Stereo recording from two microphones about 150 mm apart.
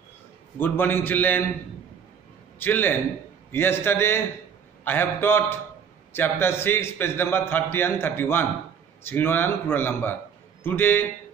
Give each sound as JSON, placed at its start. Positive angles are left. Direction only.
{"t": 0.6, "sound": "a man's voice", "side_deg": 15}
{"t": 2.6, "sound": "a man's voice", "side_deg": 15}